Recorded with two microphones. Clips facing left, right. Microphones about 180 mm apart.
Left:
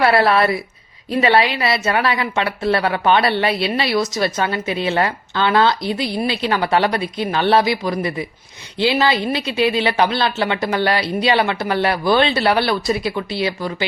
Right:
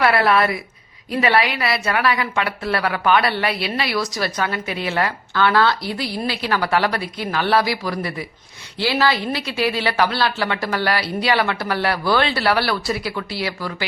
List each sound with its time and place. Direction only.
0.0 s a woman's voice: 30° left (ahead or behind)